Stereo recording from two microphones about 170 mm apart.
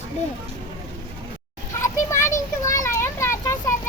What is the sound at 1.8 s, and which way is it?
Children playing, 15° left (ahead or behind).